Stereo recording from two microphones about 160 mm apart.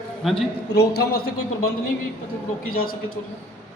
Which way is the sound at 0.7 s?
90° left.